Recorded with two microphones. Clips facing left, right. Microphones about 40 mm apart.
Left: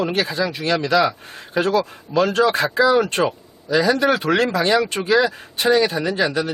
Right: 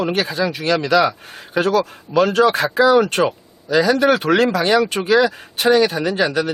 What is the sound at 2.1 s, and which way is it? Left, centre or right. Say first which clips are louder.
Speech: right 2 dB; right.